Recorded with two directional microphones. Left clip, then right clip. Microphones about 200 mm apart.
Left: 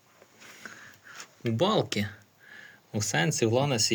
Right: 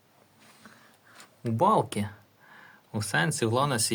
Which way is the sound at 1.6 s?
10° left (ahead or behind).